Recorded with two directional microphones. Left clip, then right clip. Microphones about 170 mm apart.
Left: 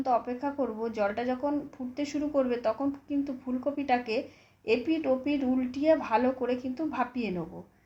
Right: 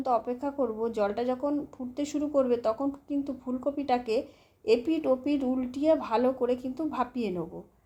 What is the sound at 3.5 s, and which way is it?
Speech, 35° right (ahead or behind).